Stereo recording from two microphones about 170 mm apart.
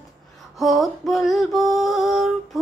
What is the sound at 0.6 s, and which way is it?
Music, centre (ahead or behind).